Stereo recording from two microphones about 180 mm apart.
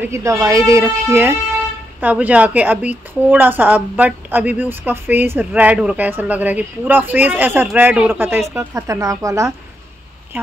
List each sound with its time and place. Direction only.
0.0 s speech: 15° right (ahead or behind)